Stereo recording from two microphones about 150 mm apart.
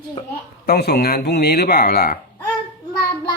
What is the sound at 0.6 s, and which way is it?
Speech, 90° left.